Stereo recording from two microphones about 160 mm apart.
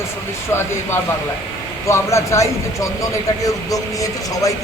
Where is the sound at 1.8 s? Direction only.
20° left (ahead or behind).